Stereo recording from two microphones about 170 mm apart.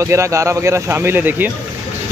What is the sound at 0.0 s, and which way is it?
Speech, 15° right (ahead or behind).